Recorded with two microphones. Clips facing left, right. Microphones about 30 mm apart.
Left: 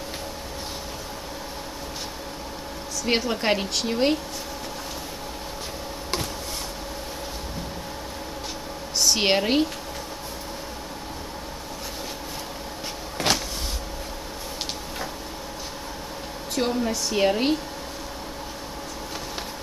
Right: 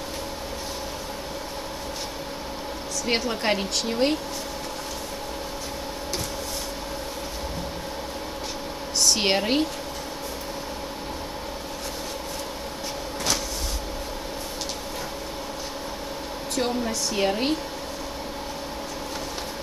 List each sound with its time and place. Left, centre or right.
3.1 s speech: centre
9.0 s speech: centre
16.5 s speech: centre